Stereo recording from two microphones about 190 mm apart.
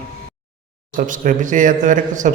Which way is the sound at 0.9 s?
45° right (ahead or behind).